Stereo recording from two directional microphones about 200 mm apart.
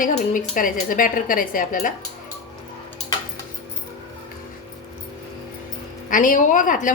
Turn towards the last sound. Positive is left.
turn(degrees=40)  # may be behind; listen again after turning